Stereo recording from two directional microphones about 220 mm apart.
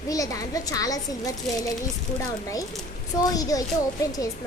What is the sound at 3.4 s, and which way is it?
Speech, 15° left (ahead or behind).